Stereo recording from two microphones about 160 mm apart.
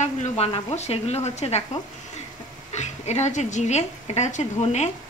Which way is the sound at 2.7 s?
45° left (ahead or behind).